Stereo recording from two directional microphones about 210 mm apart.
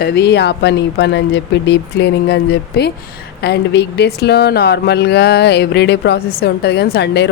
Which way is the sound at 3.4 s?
55° left (ahead or behind).